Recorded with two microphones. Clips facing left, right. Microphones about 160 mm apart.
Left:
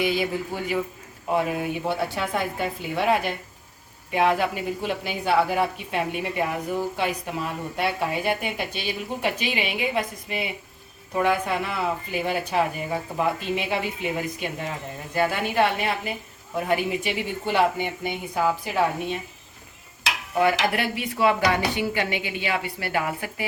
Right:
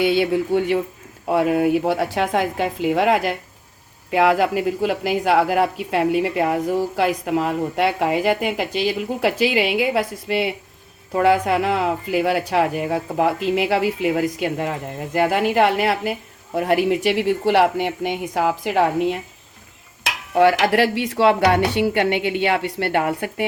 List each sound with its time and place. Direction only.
0.0 s speech: 75° right (ahead or behind)
20.3 s a woman's voice: 75° right (ahead or behind); by 23.5 s 60° right (ahead or behind)